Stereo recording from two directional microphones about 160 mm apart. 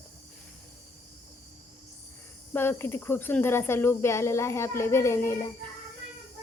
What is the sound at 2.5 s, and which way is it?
Speech, 15° left (ahead or behind).